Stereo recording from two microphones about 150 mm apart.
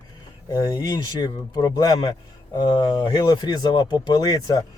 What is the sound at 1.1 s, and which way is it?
Speech, 25° left (ahead or behind).